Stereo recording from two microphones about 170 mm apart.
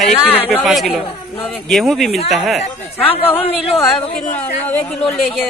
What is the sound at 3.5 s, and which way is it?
Speech, 35° left (ahead or behind).